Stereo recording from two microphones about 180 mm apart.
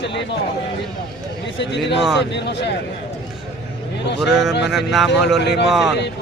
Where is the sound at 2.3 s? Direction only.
75° left (ahead or behind).